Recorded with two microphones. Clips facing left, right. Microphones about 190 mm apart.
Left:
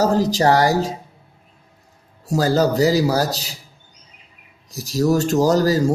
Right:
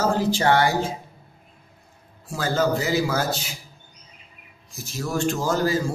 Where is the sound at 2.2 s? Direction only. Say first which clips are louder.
Left 6 dB; 40° left (ahead or behind).